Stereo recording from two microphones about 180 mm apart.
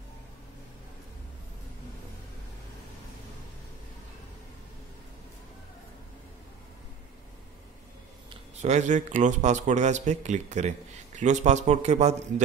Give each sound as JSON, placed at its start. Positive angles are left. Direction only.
{"t": 8.3, "sound": "speech", "side_deg": -40}